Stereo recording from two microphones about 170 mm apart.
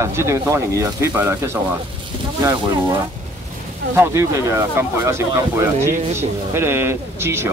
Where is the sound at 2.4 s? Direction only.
20° right (ahead or behind).